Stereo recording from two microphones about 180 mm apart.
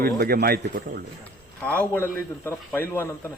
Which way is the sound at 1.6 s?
10° left (ahead or behind).